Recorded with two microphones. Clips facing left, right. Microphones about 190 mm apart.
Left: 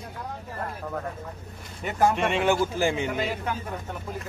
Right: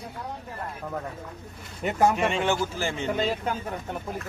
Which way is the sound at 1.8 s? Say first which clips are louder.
Right 1 dB; centre (ahead or behind).